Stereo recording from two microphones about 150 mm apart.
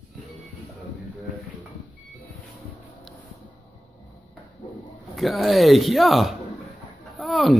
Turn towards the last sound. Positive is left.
turn(degrees=0)  # may be behind; listen again after turning